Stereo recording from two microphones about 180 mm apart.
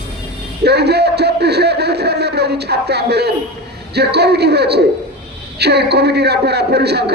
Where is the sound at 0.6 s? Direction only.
65° right (ahead or behind).